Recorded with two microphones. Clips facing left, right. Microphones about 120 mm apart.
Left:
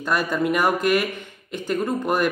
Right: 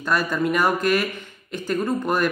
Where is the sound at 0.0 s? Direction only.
20° left (ahead or behind).